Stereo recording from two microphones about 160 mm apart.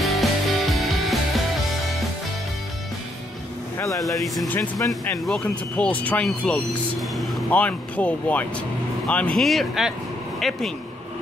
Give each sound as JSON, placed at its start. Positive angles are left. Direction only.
{"t": 0.0, "sound": "music", "side_deg": 0}
{"t": 3.7, "sound": "vehicle", "side_deg": 20}
{"t": 4.0, "sound": "speech", "side_deg": 0}
{"t": 4.5, "sound": "speech", "side_deg": 20}
{"t": 5.2, "sound": "speech", "side_deg": 5}